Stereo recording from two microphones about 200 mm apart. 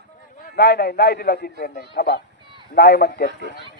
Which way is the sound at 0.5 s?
50° left (ahead or behind).